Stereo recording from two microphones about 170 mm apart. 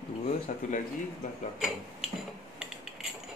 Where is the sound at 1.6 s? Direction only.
Centre (ahead or behind).